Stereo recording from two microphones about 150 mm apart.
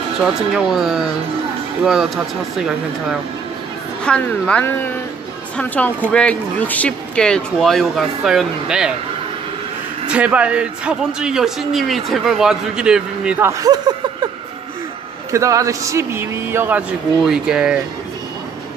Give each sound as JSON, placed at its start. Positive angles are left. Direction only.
{"t": 0.6, "sound": "speech", "side_deg": 0}
{"t": 10.1, "sound": "speech", "side_deg": -10}
{"t": 13.5, "sound": "a sound", "side_deg": -25}
{"t": 15.3, "sound": "a man's voice", "side_deg": -20}